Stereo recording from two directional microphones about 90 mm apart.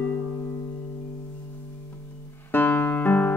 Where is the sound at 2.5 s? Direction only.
20° left (ahead or behind).